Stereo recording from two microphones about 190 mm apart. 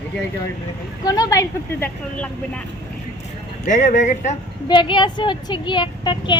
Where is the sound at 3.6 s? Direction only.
40° left (ahead or behind).